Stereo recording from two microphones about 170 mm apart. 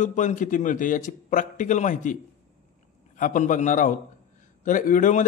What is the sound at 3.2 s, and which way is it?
Speech, 50° left (ahead or behind).